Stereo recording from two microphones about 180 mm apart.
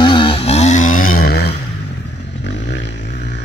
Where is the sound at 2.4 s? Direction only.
80° left.